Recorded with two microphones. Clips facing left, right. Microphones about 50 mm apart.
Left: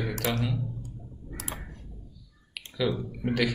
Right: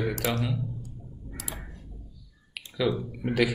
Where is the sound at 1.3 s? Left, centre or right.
Left.